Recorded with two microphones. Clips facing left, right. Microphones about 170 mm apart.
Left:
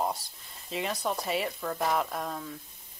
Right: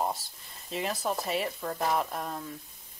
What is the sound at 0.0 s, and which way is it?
Speech, centre (ahead or behind).